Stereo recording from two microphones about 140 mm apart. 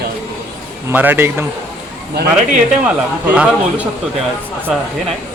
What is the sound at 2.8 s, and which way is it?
Speech, 10° right (ahead or behind).